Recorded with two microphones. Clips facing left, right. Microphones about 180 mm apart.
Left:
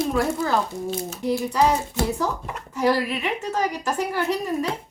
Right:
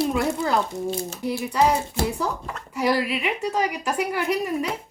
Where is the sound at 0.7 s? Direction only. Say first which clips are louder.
Right 2 dB; 20° right (ahead or behind).